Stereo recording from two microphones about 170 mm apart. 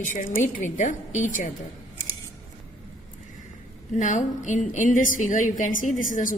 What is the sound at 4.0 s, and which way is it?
A woman's voice, 45° left (ahead or behind).